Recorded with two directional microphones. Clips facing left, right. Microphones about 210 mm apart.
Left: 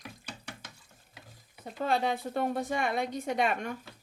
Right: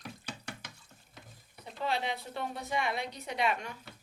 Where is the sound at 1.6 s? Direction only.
50° left (ahead or behind).